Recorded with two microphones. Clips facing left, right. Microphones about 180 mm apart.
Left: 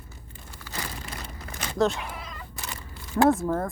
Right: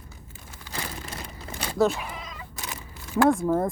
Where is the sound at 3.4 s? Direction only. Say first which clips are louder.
Right 3 dB; 15° right (ahead or behind).